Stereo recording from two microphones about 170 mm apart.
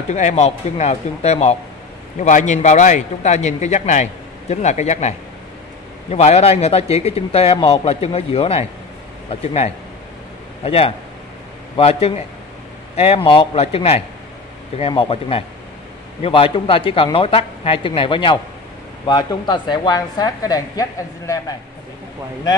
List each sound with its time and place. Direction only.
0.1 s a man's voice: 45° left (ahead or behind); by 20.8 s 20° left (ahead or behind)